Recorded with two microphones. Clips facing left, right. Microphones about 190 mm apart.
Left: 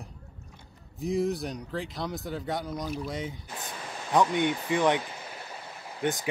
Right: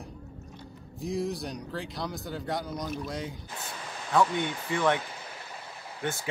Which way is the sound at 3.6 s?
20° left (ahead or behind).